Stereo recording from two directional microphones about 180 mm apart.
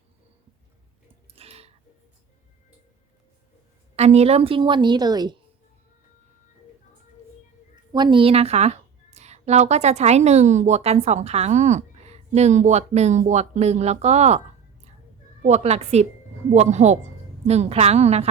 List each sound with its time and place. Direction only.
1.4 s music: 35° right (ahead or behind)
3.9 s a woman's voice: 35° right (ahead or behind)
7.9 s a woman's voice: 25° right (ahead or behind)
15.4 s a woman's voice: 40° right (ahead or behind)